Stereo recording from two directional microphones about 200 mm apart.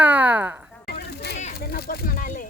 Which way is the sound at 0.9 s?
55° left (ahead or behind).